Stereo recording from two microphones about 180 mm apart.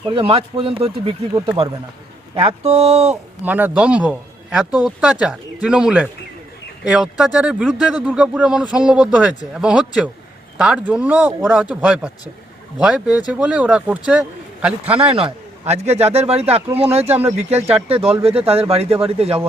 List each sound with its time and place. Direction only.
0.1 s speech: 30° right (ahead or behind)
2.3 s speech: 30° right (ahead or behind)
3.4 s speech: 10° right (ahead or behind)
14.8 s speech: 30° right (ahead or behind)